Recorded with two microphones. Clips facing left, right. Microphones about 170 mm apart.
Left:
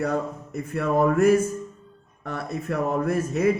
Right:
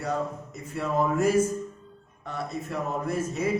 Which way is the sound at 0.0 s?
60° left (ahead or behind).